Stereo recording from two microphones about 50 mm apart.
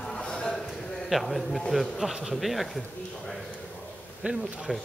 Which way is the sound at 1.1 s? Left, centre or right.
Centre.